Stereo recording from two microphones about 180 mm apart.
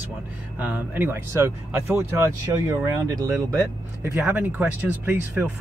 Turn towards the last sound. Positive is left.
turn(degrees=-10)  # may be behind; listen again after turning